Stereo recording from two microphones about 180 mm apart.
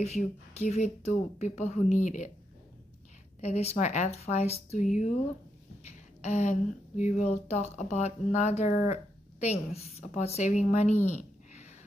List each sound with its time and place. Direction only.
0.0 s speech: 35° left (ahead or behind)
3.3 s speech: 35° left (ahead or behind)